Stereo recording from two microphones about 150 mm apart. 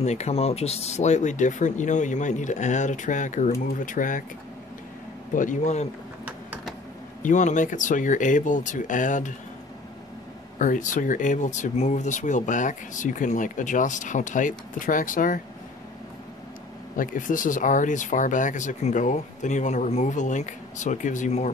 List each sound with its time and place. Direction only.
0.0 s speech: 45° left (ahead or behind)
5.3 s speech: 60° left (ahead or behind)
7.2 s speech: 55° left (ahead or behind)
10.6 s speech: 60° left (ahead or behind)
16.9 s speech: 65° left (ahead or behind)